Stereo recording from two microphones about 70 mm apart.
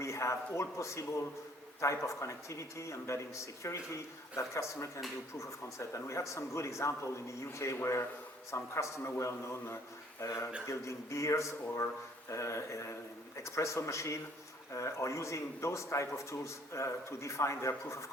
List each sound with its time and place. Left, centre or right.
0.0 s a man's voice: left